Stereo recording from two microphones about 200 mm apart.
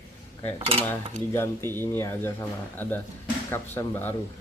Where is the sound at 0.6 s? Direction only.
30° right (ahead or behind).